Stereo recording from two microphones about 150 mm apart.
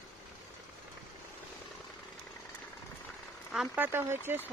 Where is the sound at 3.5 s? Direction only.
5° right (ahead or behind).